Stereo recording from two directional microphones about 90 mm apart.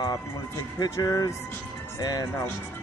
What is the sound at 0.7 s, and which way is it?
Speech, 40° left (ahead or behind).